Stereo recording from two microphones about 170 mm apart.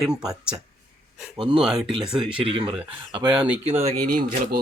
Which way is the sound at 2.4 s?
30° right (ahead or behind).